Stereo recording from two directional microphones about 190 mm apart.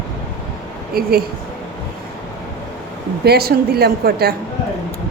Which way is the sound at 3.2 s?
55° right (ahead or behind).